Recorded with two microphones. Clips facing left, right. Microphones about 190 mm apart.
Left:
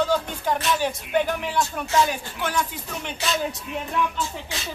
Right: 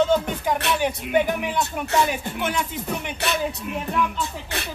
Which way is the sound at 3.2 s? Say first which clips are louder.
Right 1 dB; 65° right (ahead or behind).